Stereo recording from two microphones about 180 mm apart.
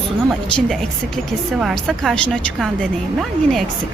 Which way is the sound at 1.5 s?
Centre (ahead or behind).